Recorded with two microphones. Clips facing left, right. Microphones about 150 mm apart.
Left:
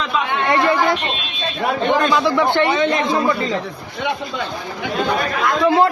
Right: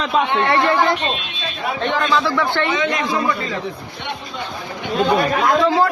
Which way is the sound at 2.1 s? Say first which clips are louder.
Left 3 dB; 15° left (ahead or behind).